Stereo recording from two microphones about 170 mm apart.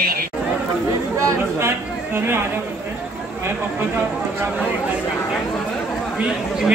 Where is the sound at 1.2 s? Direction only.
15° right (ahead or behind).